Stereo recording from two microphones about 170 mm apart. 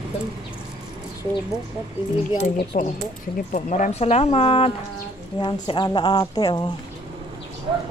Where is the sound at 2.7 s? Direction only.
50° left (ahead or behind); by 6.7 s 25° left (ahead or behind).